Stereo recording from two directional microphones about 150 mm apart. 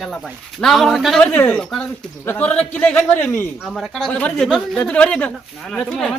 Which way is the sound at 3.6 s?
Centre (ahead or behind).